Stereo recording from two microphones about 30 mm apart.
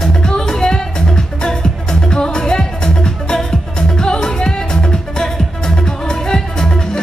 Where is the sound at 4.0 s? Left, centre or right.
Left.